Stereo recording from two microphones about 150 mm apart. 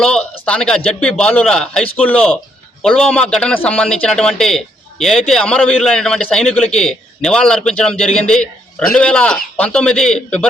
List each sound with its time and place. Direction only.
0.4 s a man's voice: 5° left (ahead or behind)